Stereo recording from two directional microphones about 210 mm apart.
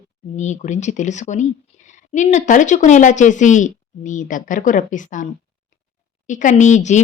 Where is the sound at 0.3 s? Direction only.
35° left (ahead or behind).